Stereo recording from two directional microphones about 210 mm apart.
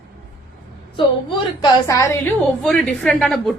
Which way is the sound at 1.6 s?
15° left (ahead or behind).